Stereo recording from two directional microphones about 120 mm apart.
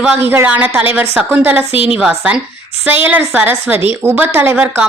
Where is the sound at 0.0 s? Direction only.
15° right (ahead or behind).